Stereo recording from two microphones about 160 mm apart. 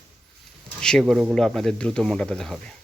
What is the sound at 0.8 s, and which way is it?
Speech, 5° left (ahead or behind).